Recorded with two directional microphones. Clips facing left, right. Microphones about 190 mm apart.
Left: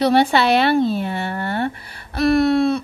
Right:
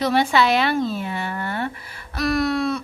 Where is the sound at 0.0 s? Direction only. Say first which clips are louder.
Left 3 dB; 30° left (ahead or behind).